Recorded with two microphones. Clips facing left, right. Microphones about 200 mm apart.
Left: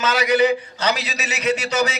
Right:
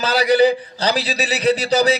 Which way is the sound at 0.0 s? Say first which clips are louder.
Right 3 dB; 35° right (ahead or behind).